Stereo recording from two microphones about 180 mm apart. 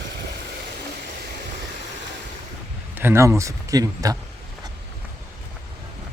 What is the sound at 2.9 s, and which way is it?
Speech, 15° right (ahead or behind).